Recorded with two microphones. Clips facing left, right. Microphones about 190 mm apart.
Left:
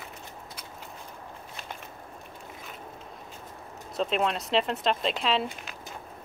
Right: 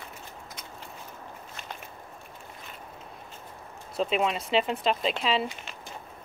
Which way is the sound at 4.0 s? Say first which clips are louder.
Right 1 dB; centre (ahead or behind).